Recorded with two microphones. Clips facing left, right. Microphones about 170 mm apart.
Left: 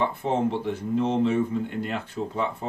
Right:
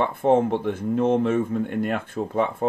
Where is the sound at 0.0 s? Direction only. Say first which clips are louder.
Right 5 dB; 55° right (ahead or behind).